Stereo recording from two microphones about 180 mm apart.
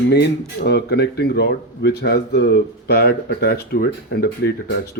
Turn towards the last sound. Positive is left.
turn(degrees=55)  # may be behind; listen again after turning